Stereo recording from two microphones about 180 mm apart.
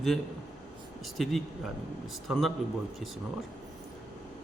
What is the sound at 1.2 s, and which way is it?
A man's voice, centre (ahead or behind).